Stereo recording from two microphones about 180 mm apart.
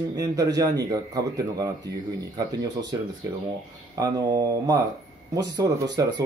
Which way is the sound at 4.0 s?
20° right (ahead or behind).